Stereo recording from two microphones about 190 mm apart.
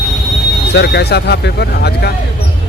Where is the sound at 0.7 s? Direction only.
65° left (ahead or behind).